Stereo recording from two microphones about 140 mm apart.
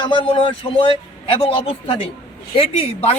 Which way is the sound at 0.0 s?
35° left (ahead or behind).